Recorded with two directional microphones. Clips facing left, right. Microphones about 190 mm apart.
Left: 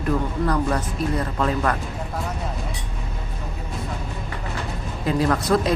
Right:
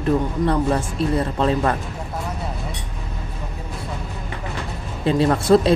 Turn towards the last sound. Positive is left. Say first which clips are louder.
# right 5 dB
turn(degrees=-30)  # may be behind; listen again after turning